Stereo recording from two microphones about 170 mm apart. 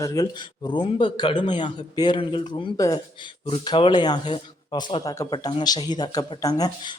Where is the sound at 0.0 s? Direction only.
20° left (ahead or behind).